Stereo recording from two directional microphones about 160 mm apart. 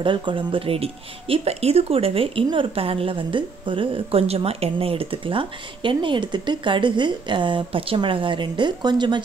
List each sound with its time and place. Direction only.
0.0 s speech: 30° right (ahead or behind)